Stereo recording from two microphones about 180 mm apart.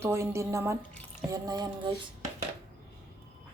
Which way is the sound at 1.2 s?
20° right (ahead or behind).